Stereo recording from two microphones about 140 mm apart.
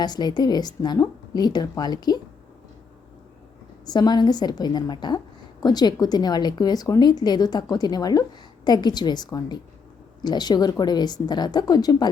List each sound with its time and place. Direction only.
0.0 s a woman's voice: 30° left (ahead or behind)
3.8 s a woman's voice: 30° left (ahead or behind)